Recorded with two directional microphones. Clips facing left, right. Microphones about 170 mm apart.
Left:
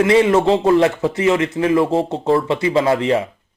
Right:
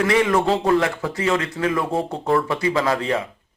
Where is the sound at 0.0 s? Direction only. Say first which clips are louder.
Left 5 dB; 25° left (ahead or behind).